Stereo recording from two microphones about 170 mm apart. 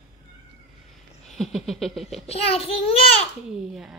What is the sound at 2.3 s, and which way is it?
Speech, 35° left (ahead or behind).